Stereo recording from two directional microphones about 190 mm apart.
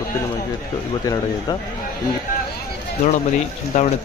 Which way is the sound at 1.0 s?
20° left (ahead or behind).